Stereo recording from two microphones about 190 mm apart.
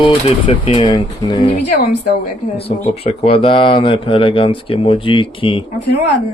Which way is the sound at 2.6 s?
30° left (ahead or behind).